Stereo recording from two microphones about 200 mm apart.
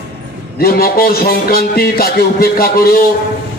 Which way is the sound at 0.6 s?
50° left (ahead or behind).